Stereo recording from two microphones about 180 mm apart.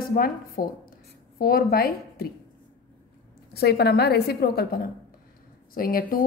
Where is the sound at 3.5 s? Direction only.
60° left (ahead or behind).